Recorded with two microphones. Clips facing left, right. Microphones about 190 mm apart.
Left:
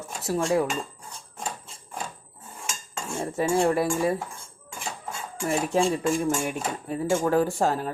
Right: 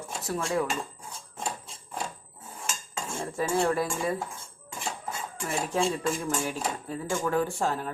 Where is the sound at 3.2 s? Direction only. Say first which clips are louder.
Left 5 dB; 25° left (ahead or behind).